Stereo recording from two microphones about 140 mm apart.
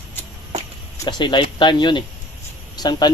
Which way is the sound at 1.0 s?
30° left (ahead or behind).